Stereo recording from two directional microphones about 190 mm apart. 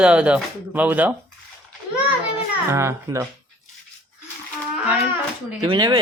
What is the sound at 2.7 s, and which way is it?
Speech, 15° right (ahead or behind).